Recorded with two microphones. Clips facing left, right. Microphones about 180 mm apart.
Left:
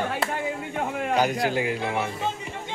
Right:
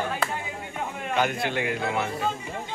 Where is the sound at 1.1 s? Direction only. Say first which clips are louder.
Left 2 dB; 40° left (ahead or behind).